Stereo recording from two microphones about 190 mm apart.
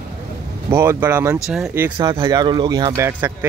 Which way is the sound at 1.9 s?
25° right (ahead or behind).